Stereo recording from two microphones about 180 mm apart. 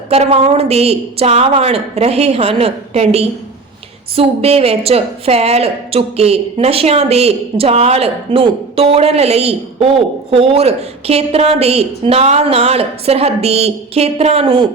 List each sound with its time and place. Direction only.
0.1 s a woman's voice: 35° right (ahead or behind)